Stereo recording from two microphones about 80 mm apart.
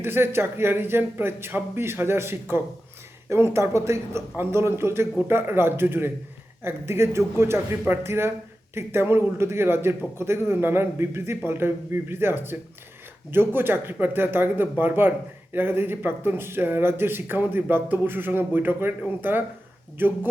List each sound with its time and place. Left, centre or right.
0.0 s speech: right